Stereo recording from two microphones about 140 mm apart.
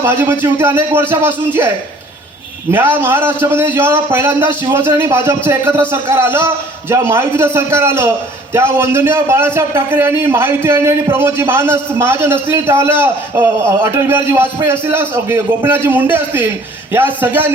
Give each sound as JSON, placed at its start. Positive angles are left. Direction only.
{"t": 0.0, "sound": "a man's voice", "side_deg": -15}